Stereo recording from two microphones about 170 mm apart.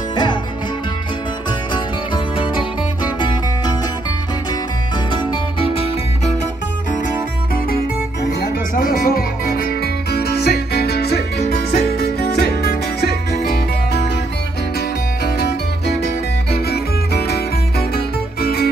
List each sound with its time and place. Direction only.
0.1 s music: 25° left (ahead or behind)
1.7 s music: 30° left (ahead or behind)
5.3 s music: 30° left (ahead or behind)
8.9 s music: 60° left (ahead or behind)
15.2 s music: 70° left (ahead or behind)